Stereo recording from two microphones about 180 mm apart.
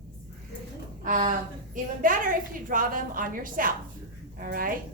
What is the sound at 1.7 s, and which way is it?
A woman's voice, 50° right (ahead or behind).